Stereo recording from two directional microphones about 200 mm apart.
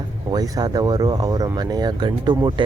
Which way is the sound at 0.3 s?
20° right (ahead or behind).